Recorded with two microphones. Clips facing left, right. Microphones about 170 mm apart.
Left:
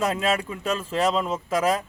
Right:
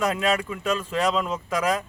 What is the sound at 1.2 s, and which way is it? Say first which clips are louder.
Speech: left 1 dB; 5° left (ahead or behind).